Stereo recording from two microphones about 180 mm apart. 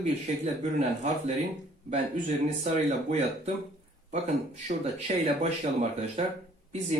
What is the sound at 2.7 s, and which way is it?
Speech, 40° right (ahead or behind).